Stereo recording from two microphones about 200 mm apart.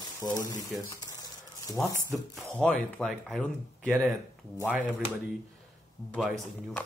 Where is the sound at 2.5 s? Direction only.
5° left (ahead or behind).